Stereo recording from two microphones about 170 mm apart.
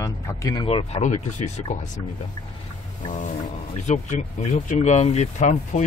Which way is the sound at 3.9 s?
45° left (ahead or behind).